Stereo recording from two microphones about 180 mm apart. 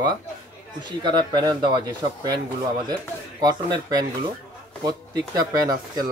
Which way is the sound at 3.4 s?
20° right (ahead or behind).